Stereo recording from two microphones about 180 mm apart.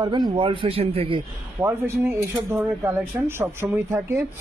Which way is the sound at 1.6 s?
15° right (ahead or behind).